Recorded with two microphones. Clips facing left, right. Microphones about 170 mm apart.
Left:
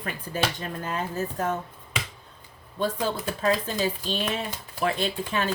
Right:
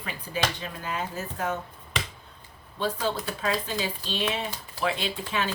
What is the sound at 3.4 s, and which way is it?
Speech, 45° left (ahead or behind).